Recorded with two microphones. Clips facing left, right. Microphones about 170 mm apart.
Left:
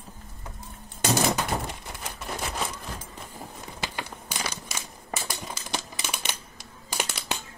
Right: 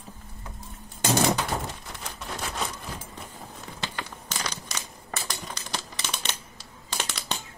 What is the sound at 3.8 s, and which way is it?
Crumpling, 10° left (ahead or behind).